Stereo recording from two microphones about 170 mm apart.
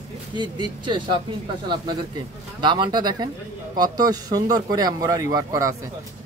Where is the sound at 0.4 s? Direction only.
25° right (ahead or behind).